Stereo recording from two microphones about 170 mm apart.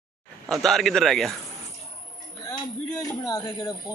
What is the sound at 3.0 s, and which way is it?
Speech, 20° left (ahead or behind).